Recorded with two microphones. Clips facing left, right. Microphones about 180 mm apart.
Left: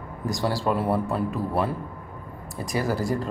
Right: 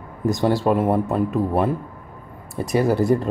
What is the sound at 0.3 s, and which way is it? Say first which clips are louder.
Speech: right 6 dB; 20° right (ahead or behind).